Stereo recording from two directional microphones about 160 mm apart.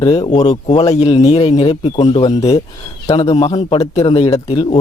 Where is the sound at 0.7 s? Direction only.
40° left (ahead or behind).